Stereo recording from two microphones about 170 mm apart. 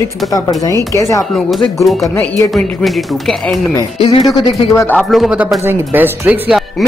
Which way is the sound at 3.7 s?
30° left (ahead or behind).